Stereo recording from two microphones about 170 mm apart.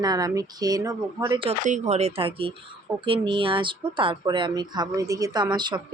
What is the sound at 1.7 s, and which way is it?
Speech, 45° right (ahead or behind).